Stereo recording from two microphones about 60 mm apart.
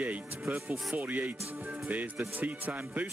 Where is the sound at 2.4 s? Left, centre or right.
Right.